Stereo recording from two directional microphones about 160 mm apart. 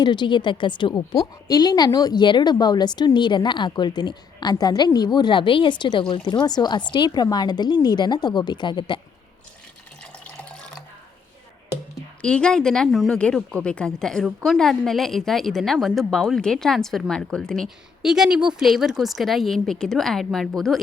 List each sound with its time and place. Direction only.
0.0 s a woman's voice: 30° left (ahead or behind)
10.0 s water: 5° left (ahead or behind)
12.2 s speech: 5° left (ahead or behind)